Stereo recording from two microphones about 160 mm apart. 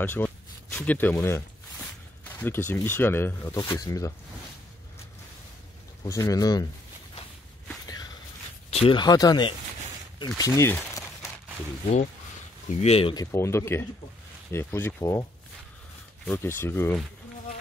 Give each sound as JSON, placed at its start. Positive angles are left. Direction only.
{"t": 0.0, "sound": "a sound", "side_deg": 10}
{"t": 1.1, "sound": "speech", "side_deg": 15}
{"t": 2.2, "sound": "a sound", "side_deg": 10}
{"t": 2.7, "sound": "speech", "side_deg": 15}
{"t": 6.0, "sound": "speech", "side_deg": 20}
{"t": 7.8, "sound": "walk", "side_deg": 25}
{"t": 8.6, "sound": "speech", "side_deg": 35}
{"t": 12.6, "sound": "speech", "side_deg": 40}
{"t": 13.1, "sound": "speech", "side_deg": 20}
{"t": 16.3, "sound": "speech", "side_deg": 15}